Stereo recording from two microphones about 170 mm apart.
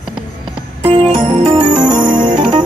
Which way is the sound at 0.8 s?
30° right (ahead or behind).